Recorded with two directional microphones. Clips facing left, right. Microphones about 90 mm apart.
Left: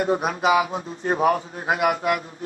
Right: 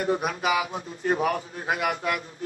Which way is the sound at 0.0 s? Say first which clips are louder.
Left 4 dB; 30° left (ahead or behind).